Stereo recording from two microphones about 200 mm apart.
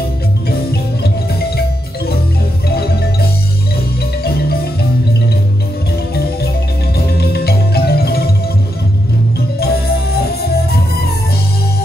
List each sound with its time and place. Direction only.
2.7 s music: 50° left (ahead or behind)
7.1 s music: 50° left (ahead or behind)
9.6 s music: 50° left (ahead or behind)